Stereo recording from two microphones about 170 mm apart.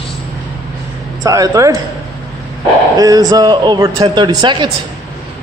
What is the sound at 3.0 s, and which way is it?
A man's voice, 20° right (ahead or behind).